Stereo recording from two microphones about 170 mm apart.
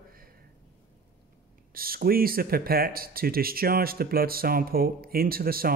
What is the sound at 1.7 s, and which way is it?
Speech, 60° right (ahead or behind).